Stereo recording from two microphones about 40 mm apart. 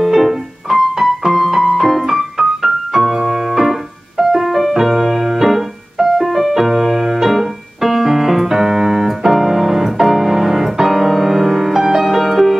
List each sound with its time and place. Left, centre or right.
0.0 s music: centre
3.3 s keyboard: centre